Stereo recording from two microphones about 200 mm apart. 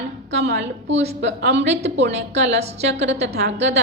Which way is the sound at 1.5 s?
35° right (ahead or behind).